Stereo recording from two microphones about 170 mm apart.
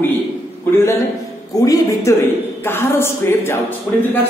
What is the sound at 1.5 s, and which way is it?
A man's voice, 20° left (ahead or behind).